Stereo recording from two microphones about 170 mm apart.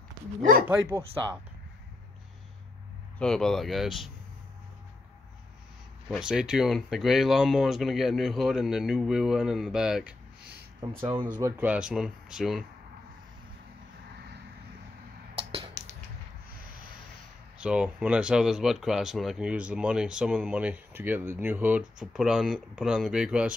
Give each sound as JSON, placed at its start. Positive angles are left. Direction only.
{"t": 0.4, "sound": "speech", "side_deg": -55}
{"t": 3.2, "sound": "speech", "side_deg": 5}
{"t": 6.0, "sound": "speech", "side_deg": -5}
{"t": 11.1, "sound": "speech", "side_deg": -25}
{"t": 15.3, "sound": "a sound", "side_deg": -35}
{"t": 17.6, "sound": "speech", "side_deg": -5}